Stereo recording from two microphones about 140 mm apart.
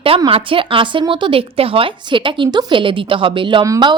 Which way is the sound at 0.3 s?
40° right (ahead or behind).